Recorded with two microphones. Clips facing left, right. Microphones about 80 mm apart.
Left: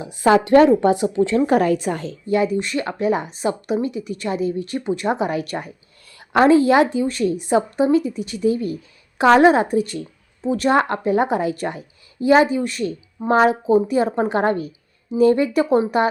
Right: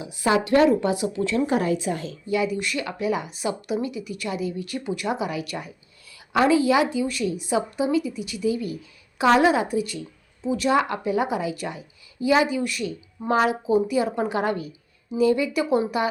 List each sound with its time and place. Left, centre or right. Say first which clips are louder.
0.0 s a woman's voice: left 6 dB; left
1.5 s a woman's voice: left 6 dB; left
2.0 s a woman's voice: left 6 dB; left